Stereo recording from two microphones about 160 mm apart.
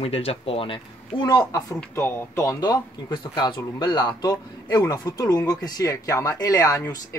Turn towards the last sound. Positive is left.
turn(degrees=20)  # may be behind; listen again after turning